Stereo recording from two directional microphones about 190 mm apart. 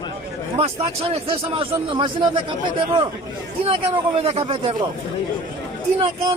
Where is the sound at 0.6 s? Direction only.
30° right (ahead or behind).